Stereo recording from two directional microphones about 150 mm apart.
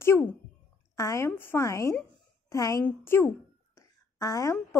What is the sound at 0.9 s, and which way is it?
A woman's voice, 20° left (ahead or behind).